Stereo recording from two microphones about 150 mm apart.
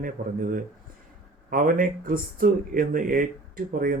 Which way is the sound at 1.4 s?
70° right (ahead or behind).